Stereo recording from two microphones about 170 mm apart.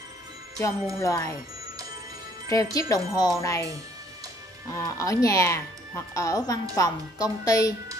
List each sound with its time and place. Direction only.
0.9 s speech: 20° left (ahead or behind)
2.5 s speech: 20° left (ahead or behind)
4.7 s speech: 20° left (ahead or behind)